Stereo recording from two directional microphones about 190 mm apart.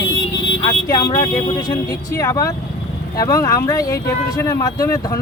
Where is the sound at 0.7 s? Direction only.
20° left (ahead or behind).